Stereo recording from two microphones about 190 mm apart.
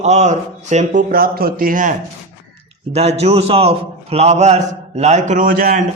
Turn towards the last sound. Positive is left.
turn(degrees=-45)  # may be behind; listen again after turning